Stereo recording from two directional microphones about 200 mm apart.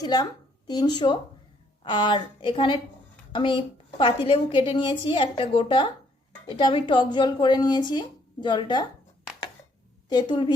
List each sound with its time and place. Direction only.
0.0 s a woman's voice: 20° left (ahead or behind)
10.1 s a woman's voice: 20° left (ahead or behind)